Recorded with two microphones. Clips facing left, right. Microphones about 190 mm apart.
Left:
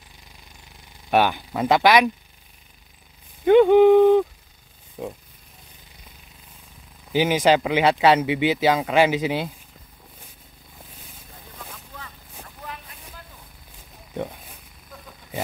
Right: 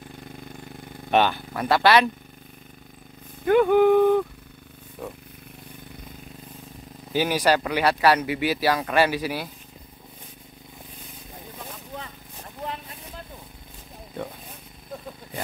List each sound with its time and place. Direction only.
0.1 s a sound: 55° right (ahead or behind)
1.1 s speech: 10° left (ahead or behind)
3.4 s speech: 20° left (ahead or behind)
7.1 s speech: 15° left (ahead or behind)
11.9 s vehicle: 20° right (ahead or behind)